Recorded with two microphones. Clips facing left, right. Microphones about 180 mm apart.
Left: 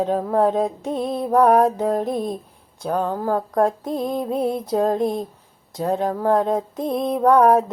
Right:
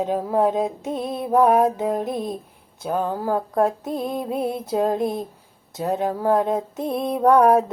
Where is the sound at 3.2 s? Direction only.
25° right (ahead or behind).